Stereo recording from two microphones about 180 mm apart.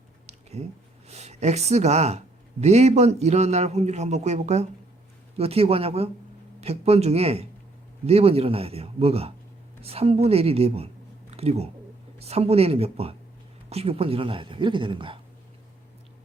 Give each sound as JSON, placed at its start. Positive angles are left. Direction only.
{"t": 0.6, "sound": "speech", "side_deg": -35}